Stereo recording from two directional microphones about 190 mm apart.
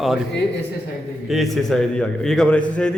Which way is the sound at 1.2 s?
Centre (ahead or behind).